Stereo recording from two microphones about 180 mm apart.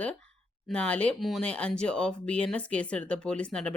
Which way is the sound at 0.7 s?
5° left (ahead or behind).